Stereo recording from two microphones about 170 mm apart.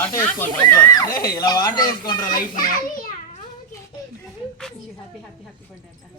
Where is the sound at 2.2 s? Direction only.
55° left (ahead or behind).